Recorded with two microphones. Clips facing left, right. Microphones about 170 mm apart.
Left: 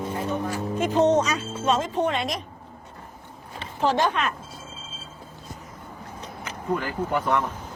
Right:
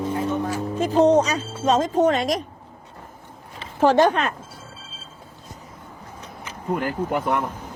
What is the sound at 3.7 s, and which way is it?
Speech, 50° right (ahead or behind).